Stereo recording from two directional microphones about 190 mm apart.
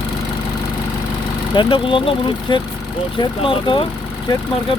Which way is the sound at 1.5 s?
25° left (ahead or behind).